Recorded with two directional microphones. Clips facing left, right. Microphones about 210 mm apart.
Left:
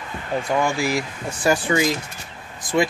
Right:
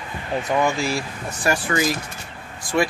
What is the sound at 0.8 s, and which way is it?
Speech, 15° left (ahead or behind).